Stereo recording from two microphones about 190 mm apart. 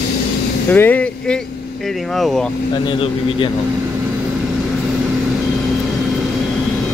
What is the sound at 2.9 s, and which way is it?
Speech, 25° left (ahead or behind).